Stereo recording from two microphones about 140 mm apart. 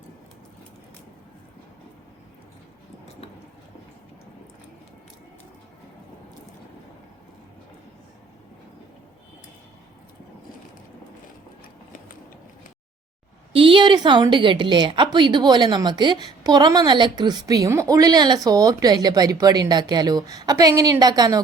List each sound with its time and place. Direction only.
13.5 s a woman's voice: 40° right (ahead or behind)